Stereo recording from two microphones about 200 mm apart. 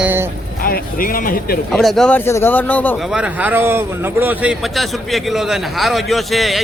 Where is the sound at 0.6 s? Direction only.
45° left (ahead or behind).